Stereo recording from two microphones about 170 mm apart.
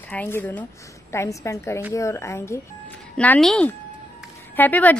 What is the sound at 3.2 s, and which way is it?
Speech, 5° left (ahead or behind).